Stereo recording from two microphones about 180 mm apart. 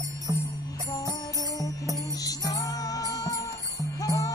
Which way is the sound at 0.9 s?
20° left (ahead or behind).